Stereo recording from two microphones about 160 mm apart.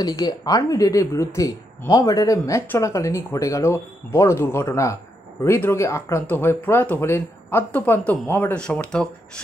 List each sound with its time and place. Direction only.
0.0 s speech: 25° left (ahead or behind); by 9.4 s 5° left (ahead or behind)